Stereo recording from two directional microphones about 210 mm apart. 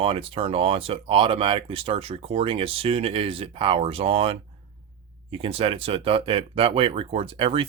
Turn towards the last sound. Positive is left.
turn(degrees=-25)  # may be behind; listen again after turning